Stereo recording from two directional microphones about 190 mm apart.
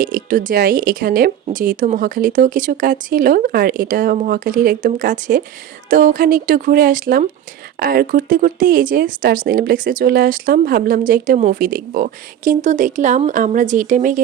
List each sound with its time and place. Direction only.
0.0 s speech: 45° right (ahead or behind)